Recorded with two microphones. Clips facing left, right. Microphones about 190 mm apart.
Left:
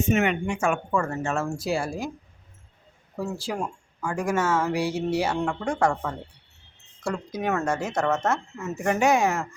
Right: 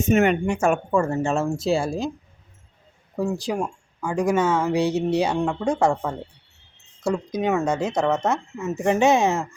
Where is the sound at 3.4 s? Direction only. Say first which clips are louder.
Right 4 dB; 15° right (ahead or behind).